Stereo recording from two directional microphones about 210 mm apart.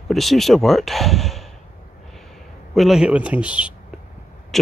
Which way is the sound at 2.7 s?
Centre (ahead or behind).